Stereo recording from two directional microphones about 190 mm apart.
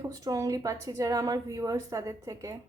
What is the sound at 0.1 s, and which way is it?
A woman's voice, 20° right (ahead or behind).